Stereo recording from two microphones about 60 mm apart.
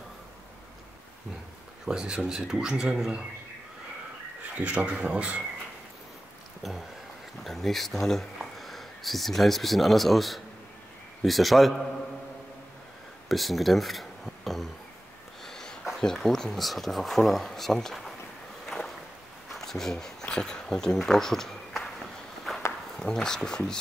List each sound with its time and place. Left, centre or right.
1.9 s speech: centre
4.6 s speech: right
7.4 s speech: centre
13.3 s speech: centre
15.4 s a sound: centre
16.0 s speech: centre
18.7 s boat: centre
19.5 s speech: centre
22.5 s a sound: centre
22.9 s speech: centre